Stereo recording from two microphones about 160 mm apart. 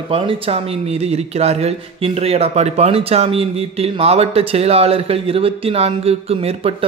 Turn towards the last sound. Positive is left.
turn(degrees=-40)  # may be behind; listen again after turning